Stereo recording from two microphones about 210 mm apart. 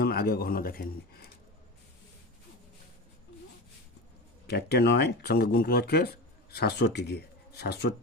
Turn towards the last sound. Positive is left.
turn(degrees=50)  # may be behind; listen again after turning